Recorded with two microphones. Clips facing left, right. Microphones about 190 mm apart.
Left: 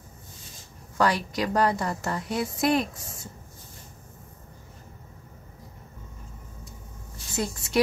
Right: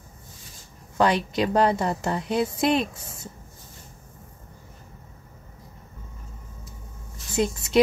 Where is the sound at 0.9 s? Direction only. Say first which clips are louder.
Right 3 dB; 20° right (ahead or behind).